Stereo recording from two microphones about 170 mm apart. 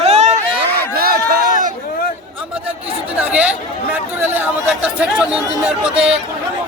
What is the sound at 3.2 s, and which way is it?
Speech, 10° right (ahead or behind).